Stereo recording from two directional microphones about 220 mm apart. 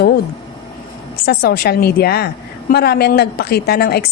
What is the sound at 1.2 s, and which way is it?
A woman's voice, 45° left (ahead or behind).